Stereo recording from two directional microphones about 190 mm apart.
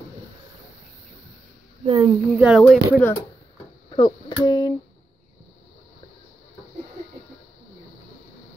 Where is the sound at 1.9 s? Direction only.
25° right (ahead or behind).